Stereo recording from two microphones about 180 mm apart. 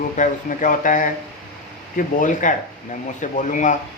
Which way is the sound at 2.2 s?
45° left (ahead or behind).